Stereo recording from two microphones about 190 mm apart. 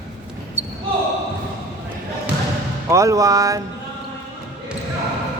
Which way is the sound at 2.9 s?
15° right (ahead or behind).